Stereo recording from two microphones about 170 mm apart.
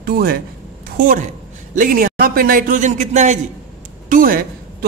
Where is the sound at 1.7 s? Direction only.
55° right (ahead or behind).